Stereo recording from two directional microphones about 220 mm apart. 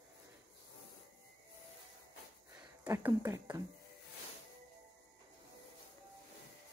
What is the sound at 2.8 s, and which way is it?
Speech, 10° right (ahead or behind).